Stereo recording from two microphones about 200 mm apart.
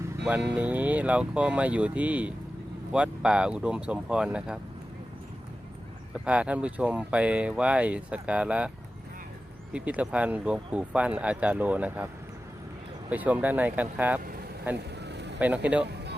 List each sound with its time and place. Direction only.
0.5 s speech: 10° right (ahead or behind)
6.2 s speech: 5° right (ahead or behind)
9.7 s speech: 5° right (ahead or behind)
13.1 s speech: 10° right (ahead or behind)
14.8 s a sound: 60° right (ahead or behind)
15.4 s speech: 5° right (ahead or behind)